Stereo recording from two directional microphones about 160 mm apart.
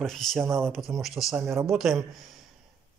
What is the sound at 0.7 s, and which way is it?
A man's voice, centre (ahead or behind).